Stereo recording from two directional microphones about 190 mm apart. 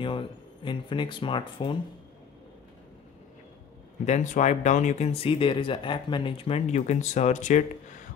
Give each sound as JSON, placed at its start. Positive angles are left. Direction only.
{"t": 0.0, "sound": "speech", "side_deg": 25}
{"t": 4.0, "sound": "speech", "side_deg": 40}